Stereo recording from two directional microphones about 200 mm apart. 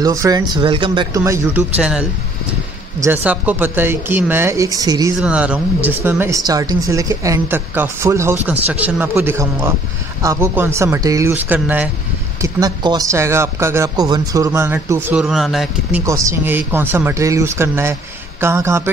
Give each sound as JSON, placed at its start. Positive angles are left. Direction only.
{"t": 0.0, "sound": "a man's voice", "side_deg": -15}
{"t": 5.2, "sound": "a man's voice", "side_deg": -5}
{"t": 16.1, "sound": "a man's voice", "side_deg": -15}